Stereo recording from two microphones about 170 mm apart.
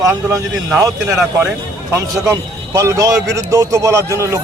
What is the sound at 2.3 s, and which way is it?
A man's voice, 20° right (ahead or behind).